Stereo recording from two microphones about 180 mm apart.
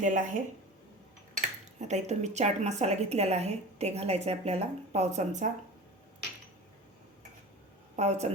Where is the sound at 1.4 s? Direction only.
40° right (ahead or behind).